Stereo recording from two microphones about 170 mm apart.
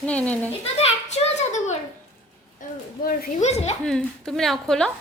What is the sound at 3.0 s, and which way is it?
Speech, 55° left (ahead or behind).